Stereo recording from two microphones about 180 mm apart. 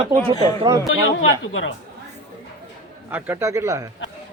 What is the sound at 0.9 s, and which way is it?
Speech, 90° left.